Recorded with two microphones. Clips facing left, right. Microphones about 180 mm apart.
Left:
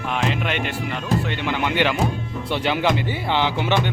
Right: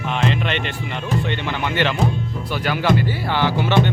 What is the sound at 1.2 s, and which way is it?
Speech, 10° left (ahead or behind).